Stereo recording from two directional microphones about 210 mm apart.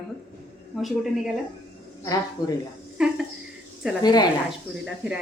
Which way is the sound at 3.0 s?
5° right (ahead or behind).